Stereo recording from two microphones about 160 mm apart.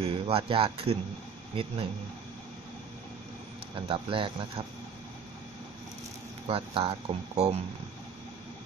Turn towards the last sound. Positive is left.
turn(degrees=-40)  # may be behind; listen again after turning